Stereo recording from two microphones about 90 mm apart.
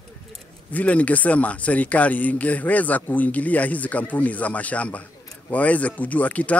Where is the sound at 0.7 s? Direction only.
15° left (ahead or behind).